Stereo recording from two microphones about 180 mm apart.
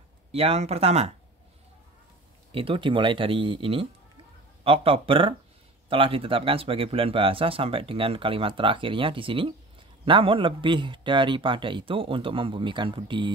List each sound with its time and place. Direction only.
0.3 s speech: 35° right (ahead or behind)
2.5 s speech: 30° right (ahead or behind)